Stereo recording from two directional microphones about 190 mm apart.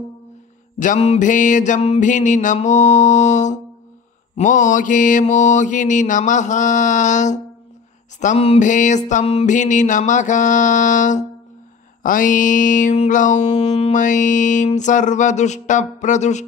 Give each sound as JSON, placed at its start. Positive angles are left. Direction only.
{"t": 0.7, "sound": "mantra", "side_deg": 40}